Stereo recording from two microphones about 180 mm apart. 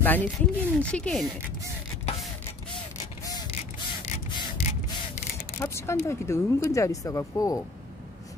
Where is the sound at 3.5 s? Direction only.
35° left (ahead or behind).